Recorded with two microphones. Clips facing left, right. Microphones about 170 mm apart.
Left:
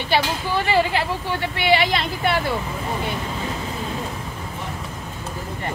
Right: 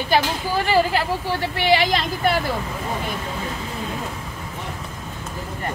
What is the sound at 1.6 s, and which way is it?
Speech, 40° right (ahead or behind).